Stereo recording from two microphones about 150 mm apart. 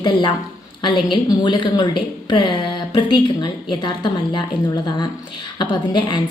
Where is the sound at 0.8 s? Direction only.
30° left (ahead or behind).